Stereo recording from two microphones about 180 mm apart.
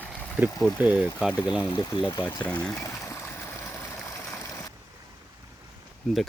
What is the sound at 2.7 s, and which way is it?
Speech, 15° left (ahead or behind).